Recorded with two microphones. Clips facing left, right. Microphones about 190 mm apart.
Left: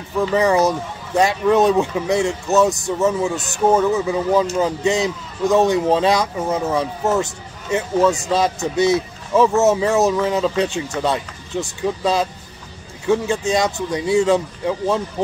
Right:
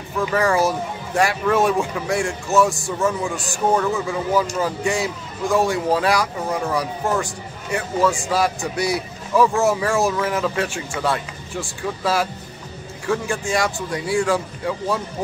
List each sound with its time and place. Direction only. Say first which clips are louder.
0.3 s speech: left 3 dB; 20° left (ahead or behind)